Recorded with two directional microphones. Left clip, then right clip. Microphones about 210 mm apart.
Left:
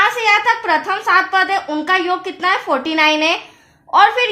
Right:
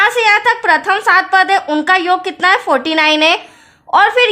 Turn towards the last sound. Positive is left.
turn(degrees=-45)  # may be behind; listen again after turning